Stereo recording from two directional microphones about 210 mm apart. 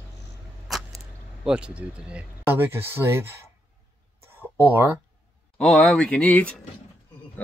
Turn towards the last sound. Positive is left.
turn(degrees=10)  # may be behind; listen again after turning